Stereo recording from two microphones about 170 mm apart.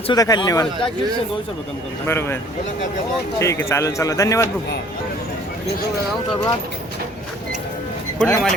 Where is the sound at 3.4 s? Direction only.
15° left (ahead or behind).